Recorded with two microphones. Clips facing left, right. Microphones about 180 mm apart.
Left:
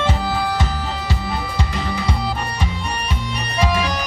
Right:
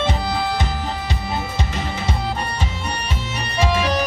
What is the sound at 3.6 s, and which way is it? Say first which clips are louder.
Organ: right 2 dB; 25° right (ahead or behind).